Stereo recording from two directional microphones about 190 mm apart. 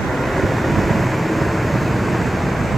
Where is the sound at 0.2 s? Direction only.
Centre (ahead or behind).